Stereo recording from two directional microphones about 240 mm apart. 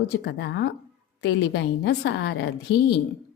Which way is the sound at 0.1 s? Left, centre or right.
Left.